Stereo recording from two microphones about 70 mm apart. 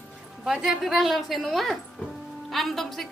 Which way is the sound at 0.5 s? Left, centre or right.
Centre.